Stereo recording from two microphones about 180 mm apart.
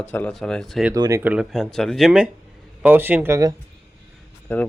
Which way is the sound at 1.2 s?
5° right (ahead or behind).